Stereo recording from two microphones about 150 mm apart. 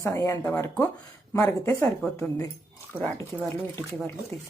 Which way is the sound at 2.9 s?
10° right (ahead or behind).